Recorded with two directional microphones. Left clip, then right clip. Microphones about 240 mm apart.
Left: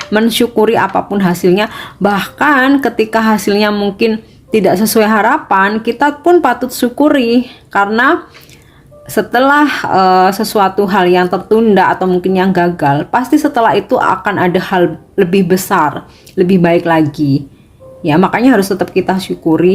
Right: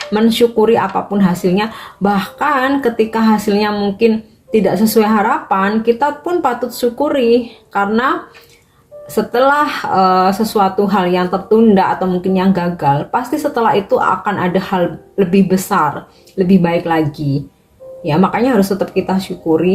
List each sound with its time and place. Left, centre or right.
0.1 s speech: left
9.1 s speech: left